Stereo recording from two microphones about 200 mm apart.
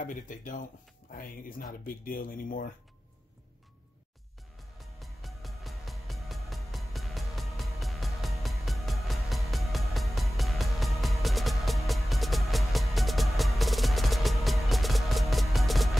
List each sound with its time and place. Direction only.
0.0 s speech: 40° left (ahead or behind)
4.7 s music: centre (ahead or behind)